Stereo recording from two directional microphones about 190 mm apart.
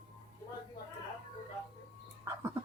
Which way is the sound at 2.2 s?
15° right (ahead or behind).